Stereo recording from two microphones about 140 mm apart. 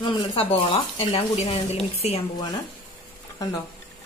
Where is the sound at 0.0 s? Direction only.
35° left (ahead or behind).